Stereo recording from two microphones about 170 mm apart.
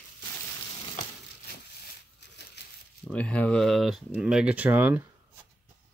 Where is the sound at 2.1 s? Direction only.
80° left.